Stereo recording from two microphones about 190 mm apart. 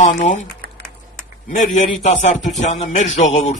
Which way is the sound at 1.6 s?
40° left (ahead or behind).